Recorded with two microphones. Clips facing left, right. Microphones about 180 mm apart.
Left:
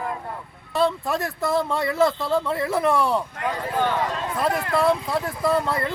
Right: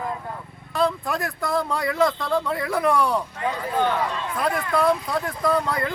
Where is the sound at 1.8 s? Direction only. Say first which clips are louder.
Left 1 dB; 25° left (ahead or behind).